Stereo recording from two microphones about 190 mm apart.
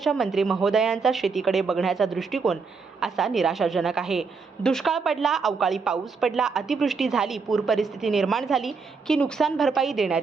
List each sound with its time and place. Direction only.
0.0 s a woman's voice: centre (ahead or behind)